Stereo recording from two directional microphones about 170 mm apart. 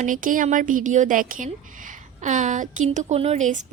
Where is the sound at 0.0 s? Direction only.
50° right (ahead or behind).